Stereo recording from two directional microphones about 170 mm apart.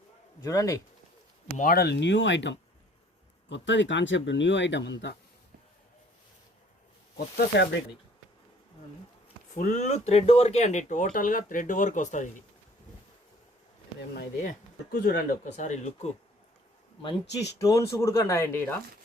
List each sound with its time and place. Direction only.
0.4 s speech: 20° left (ahead or behind)
1.5 s speech: 60° left (ahead or behind); by 5.1 s 90° left
7.3 s speech: 85° left
9.6 s speech: 45° left (ahead or behind)
15.0 s speech: 55° left (ahead or behind)
17.2 s speech: 80° left
17.6 s speech: 20° left (ahead or behind)